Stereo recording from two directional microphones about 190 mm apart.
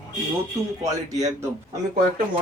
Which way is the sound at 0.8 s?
20° right (ahead or behind).